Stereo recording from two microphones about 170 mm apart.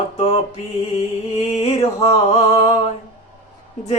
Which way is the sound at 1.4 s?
35° left (ahead or behind).